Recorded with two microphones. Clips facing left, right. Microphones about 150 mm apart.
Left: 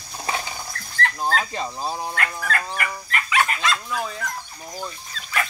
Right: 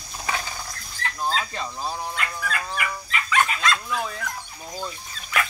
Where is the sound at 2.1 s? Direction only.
60° left (ahead or behind).